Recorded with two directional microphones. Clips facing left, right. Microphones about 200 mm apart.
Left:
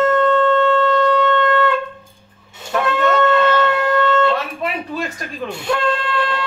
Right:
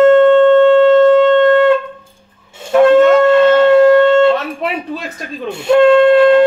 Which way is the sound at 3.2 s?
25° right (ahead or behind).